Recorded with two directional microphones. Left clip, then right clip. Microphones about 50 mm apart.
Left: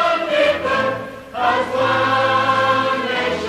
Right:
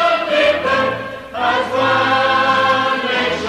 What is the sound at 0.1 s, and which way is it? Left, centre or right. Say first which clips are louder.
Music: right 2 dB; right.